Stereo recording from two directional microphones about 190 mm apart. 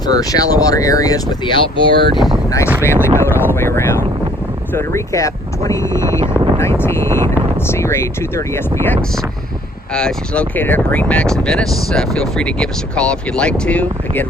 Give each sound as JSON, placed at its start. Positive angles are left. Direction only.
{"t": 0.1, "sound": "speech", "side_deg": 20}
{"t": 2.8, "sound": "speech", "side_deg": 15}